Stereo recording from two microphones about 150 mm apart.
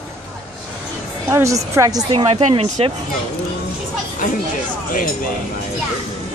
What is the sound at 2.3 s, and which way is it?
Speech, 45° right (ahead or behind).